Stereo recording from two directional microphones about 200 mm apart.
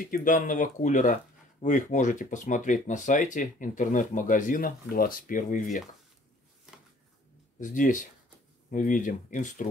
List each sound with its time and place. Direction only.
0.0 s speech: 45° left (ahead or behind)
7.6 s speech: 40° left (ahead or behind)